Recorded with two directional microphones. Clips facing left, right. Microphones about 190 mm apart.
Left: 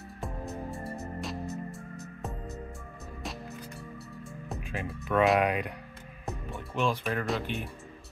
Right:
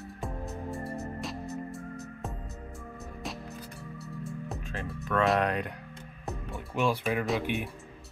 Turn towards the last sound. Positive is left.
turn(degrees=-5)  # may be behind; listen again after turning